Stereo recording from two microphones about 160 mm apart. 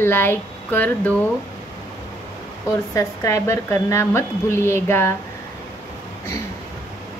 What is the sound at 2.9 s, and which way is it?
A woman's voice, 20° left (ahead or behind).